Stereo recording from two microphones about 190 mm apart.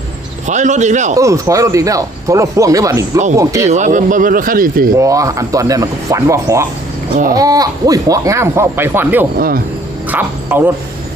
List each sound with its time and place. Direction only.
0.4 s a man's voice: 40° right (ahead or behind)
1.1 s speech: 15° right (ahead or behind)
3.7 s speech: 40° right (ahead or behind)
4.9 s speech: 15° right (ahead or behind)